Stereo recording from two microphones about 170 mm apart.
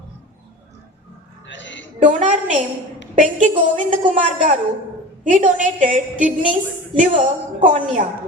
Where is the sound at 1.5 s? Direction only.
90° left.